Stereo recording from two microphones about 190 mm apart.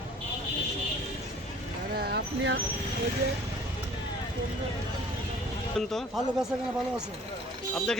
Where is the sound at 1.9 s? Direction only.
55° right (ahead or behind).